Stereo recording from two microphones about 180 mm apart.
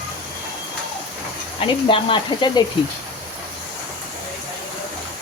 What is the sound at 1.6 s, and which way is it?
Speech, 30° left (ahead or behind).